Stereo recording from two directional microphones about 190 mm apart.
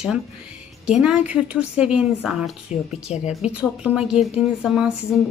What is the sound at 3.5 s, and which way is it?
A woman's voice, 5° right (ahead or behind).